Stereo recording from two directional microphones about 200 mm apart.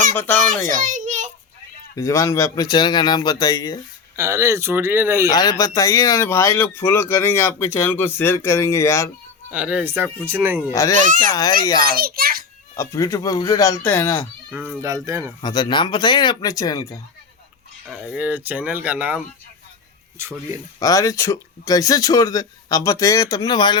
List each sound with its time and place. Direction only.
0.7 s a sound: 40° right (ahead or behind)
2.0 s speech: 15° left (ahead or behind)
4.2 s speech: 15° right (ahead or behind)
5.3 s speech: 20° left (ahead or behind)
9.5 s speech: 5° right (ahead or behind)
10.7 s speech: 15° left (ahead or behind)
11.9 s a child's voice: 50° right (ahead or behind)
12.7 s speech: 15° left (ahead or behind)
14.5 s speech: 5° right (ahead or behind)
15.4 s speech: 20° left (ahead or behind)
17.8 s speech: centre (ahead or behind)
20.7 s speech: 15° left (ahead or behind)